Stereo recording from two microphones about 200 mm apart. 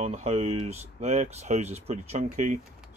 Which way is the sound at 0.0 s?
35° right (ahead or behind).